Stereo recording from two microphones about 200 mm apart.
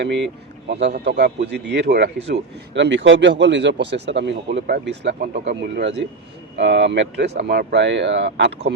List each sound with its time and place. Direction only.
0.7 s speech: 55° right (ahead or behind)